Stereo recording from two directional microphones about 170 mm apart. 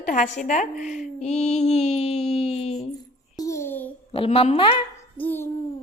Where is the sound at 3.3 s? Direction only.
20° left (ahead or behind).